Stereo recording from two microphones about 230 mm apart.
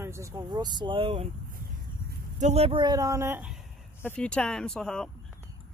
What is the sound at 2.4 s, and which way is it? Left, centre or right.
Speech, right.